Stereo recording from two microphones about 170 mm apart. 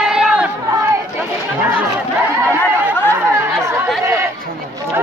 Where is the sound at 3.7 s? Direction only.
15° right (ahead or behind).